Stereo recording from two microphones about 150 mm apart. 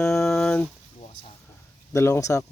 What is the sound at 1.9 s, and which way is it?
Speech, 20° left (ahead or behind).